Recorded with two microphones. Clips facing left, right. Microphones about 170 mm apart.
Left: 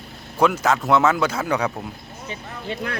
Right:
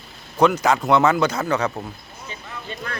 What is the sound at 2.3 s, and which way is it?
Speech, 70° left (ahead or behind).